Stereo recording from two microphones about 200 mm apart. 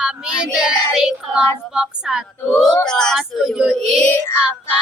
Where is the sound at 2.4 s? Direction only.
10° left (ahead or behind).